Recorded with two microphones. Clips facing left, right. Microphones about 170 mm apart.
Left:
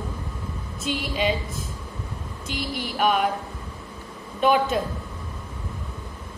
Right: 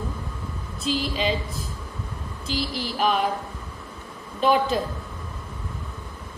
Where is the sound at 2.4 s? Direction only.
30° right (ahead or behind).